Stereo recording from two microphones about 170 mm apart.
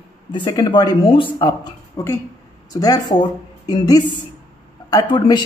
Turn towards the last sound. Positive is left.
turn(degrees=25)  # may be behind; listen again after turning